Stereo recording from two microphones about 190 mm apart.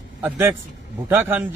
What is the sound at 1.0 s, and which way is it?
Speech, 10° right (ahead or behind).